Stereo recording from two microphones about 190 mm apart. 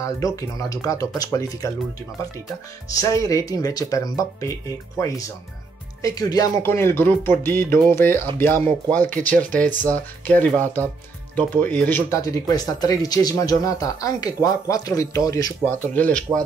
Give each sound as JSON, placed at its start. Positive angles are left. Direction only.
{"t": 0.0, "sound": "speech", "side_deg": 20}
{"t": 2.9, "sound": "speech", "side_deg": 15}